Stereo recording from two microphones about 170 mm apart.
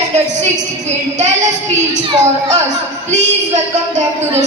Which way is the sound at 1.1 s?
45° right (ahead or behind).